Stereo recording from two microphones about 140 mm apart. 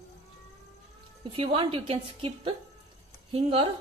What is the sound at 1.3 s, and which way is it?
A woman's voice, 40° right (ahead or behind).